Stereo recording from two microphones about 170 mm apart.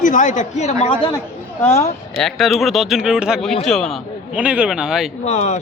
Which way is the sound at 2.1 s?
Centre (ahead or behind).